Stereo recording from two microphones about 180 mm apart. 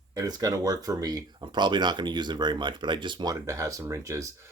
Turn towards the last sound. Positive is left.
turn(degrees=-15)  # may be behind; listen again after turning